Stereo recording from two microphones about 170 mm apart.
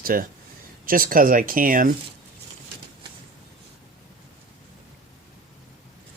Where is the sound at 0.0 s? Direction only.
55° right (ahead or behind).